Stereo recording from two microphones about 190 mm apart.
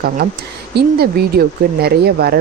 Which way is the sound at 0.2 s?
55° right (ahead or behind).